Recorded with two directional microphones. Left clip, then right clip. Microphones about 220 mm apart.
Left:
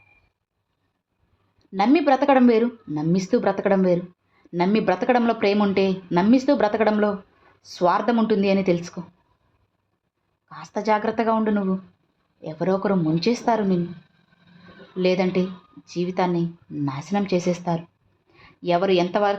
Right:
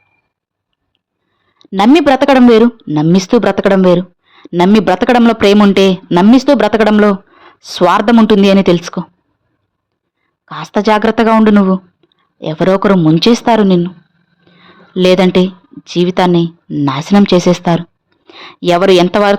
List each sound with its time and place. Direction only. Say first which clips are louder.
1.5 s speech: right 11 dB; 40° right (ahead or behind)
10.4 s speech: right 12 dB; 40° right (ahead or behind)
14.9 s a woman's voice: right 13 dB; 40° right (ahead or behind)